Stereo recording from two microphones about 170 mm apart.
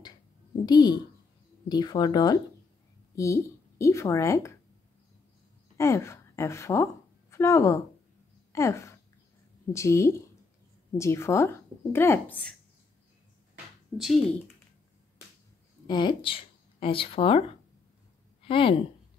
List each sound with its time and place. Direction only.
0.7 s speech: 25° left (ahead or behind)
5.8 s a woman's voice: 15° left (ahead or behind)
13.9 s speech: centre (ahead or behind)
15.9 s speech: 25° left (ahead or behind)
18.4 s a woman's voice: 30° left (ahead or behind)